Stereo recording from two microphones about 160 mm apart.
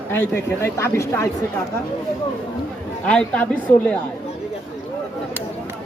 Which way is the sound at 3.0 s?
10° left (ahead or behind).